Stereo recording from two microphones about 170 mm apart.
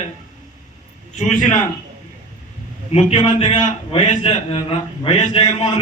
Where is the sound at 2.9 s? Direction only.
35° left (ahead or behind).